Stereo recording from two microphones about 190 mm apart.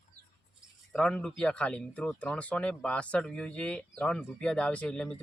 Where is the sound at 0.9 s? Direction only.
5° left (ahead or behind).